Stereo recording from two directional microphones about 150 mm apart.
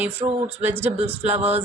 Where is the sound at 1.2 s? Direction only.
45° right (ahead or behind).